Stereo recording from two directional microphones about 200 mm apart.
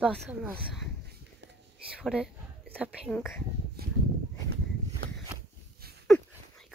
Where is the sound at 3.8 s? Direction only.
50° right (ahead or behind).